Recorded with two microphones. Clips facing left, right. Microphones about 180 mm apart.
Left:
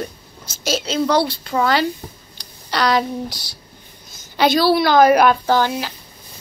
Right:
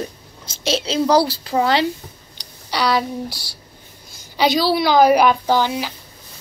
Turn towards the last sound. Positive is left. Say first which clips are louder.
# left 1 dB
turn(degrees=-15)  # may be behind; listen again after turning